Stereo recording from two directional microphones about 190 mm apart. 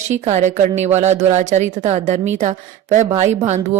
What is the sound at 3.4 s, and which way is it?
Speech, 35° right (ahead or behind).